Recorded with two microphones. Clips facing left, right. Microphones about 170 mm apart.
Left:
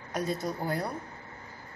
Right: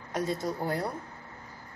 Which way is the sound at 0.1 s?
25° right (ahead or behind).